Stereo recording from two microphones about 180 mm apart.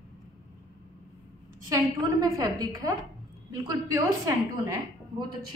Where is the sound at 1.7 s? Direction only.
20° right (ahead or behind).